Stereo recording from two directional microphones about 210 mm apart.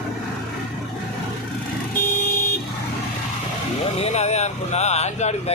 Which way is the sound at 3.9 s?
30° left (ahead or behind).